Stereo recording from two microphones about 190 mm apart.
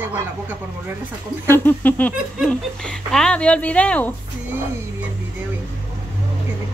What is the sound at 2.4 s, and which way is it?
Speech, 5° left (ahead or behind).